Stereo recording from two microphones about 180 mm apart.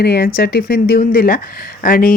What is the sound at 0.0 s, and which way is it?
Speech, 65° left (ahead or behind).